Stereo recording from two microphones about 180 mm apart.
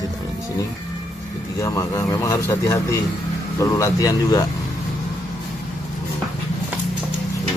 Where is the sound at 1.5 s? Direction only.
15° left (ahead or behind).